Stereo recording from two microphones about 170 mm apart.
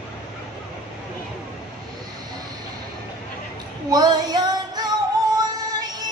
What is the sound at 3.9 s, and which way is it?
Music, 25° right (ahead or behind).